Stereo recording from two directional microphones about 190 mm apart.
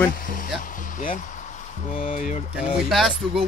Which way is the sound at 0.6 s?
45° left (ahead or behind).